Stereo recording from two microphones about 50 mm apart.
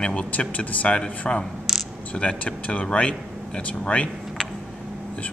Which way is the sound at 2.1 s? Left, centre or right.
Left.